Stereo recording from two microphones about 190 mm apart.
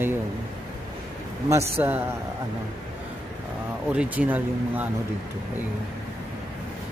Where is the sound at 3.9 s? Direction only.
5° right (ahead or behind).